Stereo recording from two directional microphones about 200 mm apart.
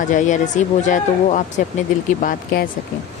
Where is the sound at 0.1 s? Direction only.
40° left (ahead or behind).